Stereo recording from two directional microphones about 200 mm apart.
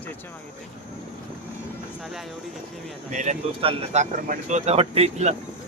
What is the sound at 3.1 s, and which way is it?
Speech, 35° right (ahead or behind).